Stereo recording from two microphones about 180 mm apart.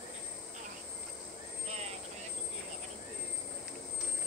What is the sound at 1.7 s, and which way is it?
Vehicle, 35° right (ahead or behind).